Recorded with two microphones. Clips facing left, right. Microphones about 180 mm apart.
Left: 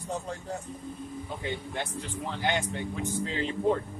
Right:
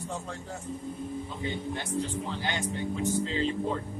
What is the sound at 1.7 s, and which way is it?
Speech, 55° left (ahead or behind).